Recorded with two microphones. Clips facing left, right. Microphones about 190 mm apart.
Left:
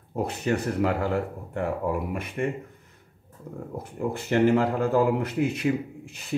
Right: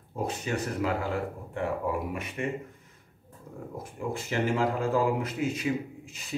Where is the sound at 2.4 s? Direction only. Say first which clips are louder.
Left 5 dB; 50° left (ahead or behind).